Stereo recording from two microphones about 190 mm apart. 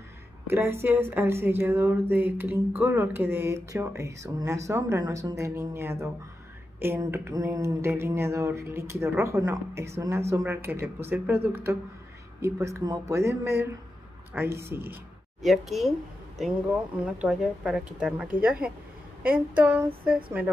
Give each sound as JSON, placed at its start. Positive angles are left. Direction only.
{"t": 0.5, "sound": "speech", "side_deg": -15}
{"t": 15.4, "sound": "a woman's voice", "side_deg": 0}
{"t": 17.0, "sound": "a woman's voice", "side_deg": -5}